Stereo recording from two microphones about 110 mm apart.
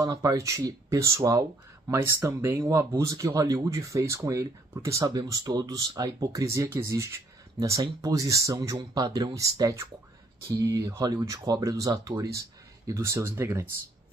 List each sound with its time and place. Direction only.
0.0 s speech: 30° right (ahead or behind)